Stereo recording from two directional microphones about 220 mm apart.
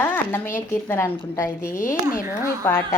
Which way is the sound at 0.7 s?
10° left (ahead or behind).